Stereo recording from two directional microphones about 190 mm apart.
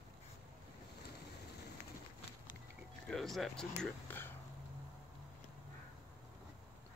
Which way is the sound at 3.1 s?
Centre (ahead or behind).